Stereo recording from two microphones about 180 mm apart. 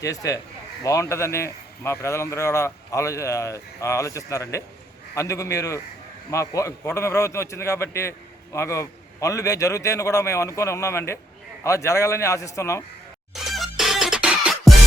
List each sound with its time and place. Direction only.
0.0 s a man's voice: 20° left (ahead or behind)
13.3 s music: centre (ahead or behind)